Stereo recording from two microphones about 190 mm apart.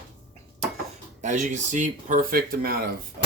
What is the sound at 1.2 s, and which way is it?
Speech, 40° right (ahead or behind).